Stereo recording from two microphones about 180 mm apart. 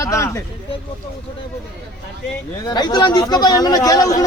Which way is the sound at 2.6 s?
25° left (ahead or behind).